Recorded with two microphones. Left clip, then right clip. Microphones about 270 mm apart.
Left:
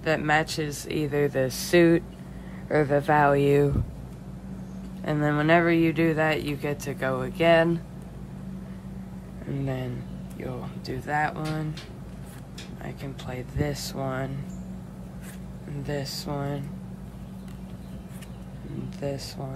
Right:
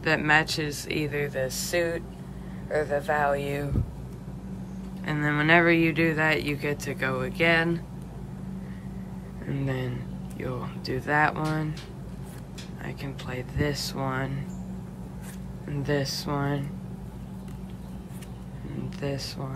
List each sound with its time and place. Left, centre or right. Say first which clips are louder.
0.0 s speech: right 1 dB; centre
1.5 s speech: left 7 dB; left
5.0 s speech: even; centre
9.5 s speech: even; centre
12.8 s speech: right 1 dB; centre
15.7 s speech: right 4 dB; centre
18.9 s speech: even; centre